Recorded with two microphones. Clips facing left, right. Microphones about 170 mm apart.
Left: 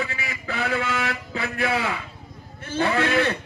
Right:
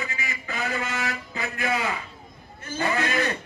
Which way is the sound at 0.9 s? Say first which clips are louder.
Left 3 dB; 60° left (ahead or behind).